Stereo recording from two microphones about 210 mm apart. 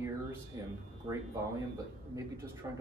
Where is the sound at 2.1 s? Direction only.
10° right (ahead or behind).